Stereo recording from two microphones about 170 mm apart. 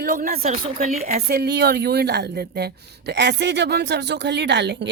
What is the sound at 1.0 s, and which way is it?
A woman's voice, 65° right (ahead or behind).